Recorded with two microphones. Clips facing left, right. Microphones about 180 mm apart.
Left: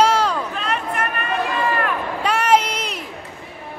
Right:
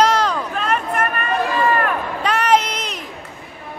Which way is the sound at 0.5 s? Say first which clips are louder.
Right 3 dB; 50° right (ahead or behind).